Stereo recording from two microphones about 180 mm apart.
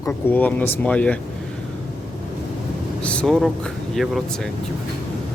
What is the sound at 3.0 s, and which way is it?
Speech, 5° left (ahead or behind).